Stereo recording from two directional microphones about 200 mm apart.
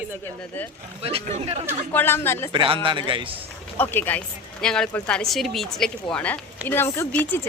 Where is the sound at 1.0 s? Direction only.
30° right (ahead or behind).